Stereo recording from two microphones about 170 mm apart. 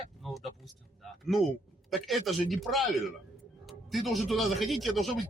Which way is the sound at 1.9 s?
Centre (ahead or behind).